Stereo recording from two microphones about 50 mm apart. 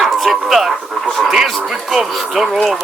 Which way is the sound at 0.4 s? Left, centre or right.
Centre.